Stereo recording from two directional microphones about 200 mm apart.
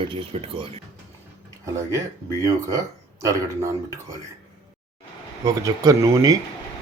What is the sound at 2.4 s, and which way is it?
Speech, 15° right (ahead or behind).